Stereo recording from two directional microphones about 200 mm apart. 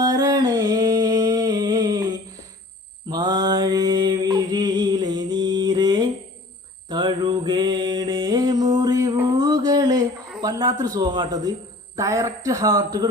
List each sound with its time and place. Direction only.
0.0 s humming: 20° right (ahead or behind)
3.1 s a sound: 20° right (ahead or behind)
10.4 s a man's voice: 20° right (ahead or behind)